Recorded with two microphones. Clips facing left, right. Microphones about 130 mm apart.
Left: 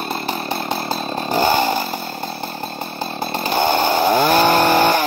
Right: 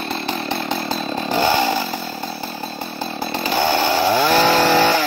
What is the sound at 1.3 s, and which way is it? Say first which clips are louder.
Chainsaw: left 1 dB; 45° left (ahead or behind).